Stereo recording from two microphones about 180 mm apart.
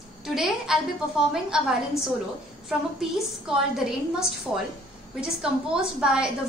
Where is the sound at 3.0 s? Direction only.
5° right (ahead or behind).